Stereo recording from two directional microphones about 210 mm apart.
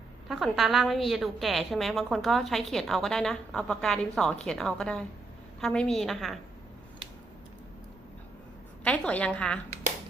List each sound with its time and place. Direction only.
0.3 s a woman's voice: centre (ahead or behind)
8.8 s a woman's voice: 5° left (ahead or behind)